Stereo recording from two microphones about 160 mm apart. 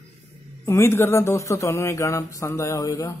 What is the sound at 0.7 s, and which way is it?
A man's voice, 15° left (ahead or behind).